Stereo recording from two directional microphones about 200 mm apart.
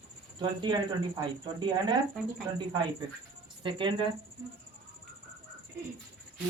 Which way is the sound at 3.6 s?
25° right (ahead or behind).